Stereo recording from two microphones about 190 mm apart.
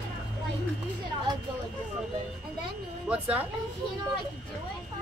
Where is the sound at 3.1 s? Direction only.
5° right (ahead or behind).